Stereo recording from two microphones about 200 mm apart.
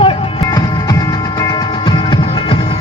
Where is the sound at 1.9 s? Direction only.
25° left (ahead or behind).